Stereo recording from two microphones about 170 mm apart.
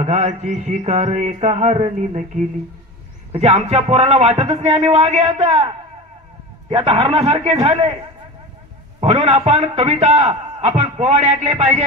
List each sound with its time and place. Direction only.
0.0 s a man's voice: 40° right (ahead or behind)
3.3 s a man's voice: 40° right (ahead or behind)
6.7 s a man's voice: 35° right (ahead or behind)
9.0 s a man's voice: 40° right (ahead or behind)